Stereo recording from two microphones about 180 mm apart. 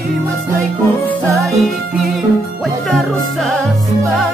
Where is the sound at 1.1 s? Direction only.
Centre (ahead or behind).